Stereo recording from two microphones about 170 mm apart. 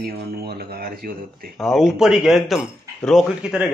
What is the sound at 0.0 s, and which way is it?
Speech, 65° right (ahead or behind).